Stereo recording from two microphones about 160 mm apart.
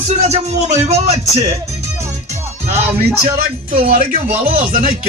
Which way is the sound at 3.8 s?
60° right (ahead or behind).